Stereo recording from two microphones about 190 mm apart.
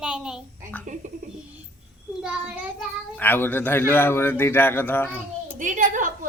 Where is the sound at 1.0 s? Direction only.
40° right (ahead or behind).